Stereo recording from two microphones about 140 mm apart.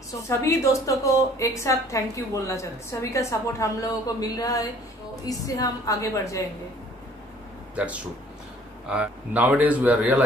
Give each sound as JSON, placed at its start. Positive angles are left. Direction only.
{"t": 0.3, "sound": "a woman's voice", "side_deg": 20}
{"t": 7.7, "sound": "a man's voice", "side_deg": -10}